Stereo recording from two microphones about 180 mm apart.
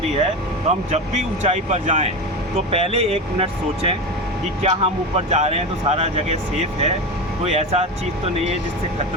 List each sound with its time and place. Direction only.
0.9 s speech: 40° right (ahead or behind)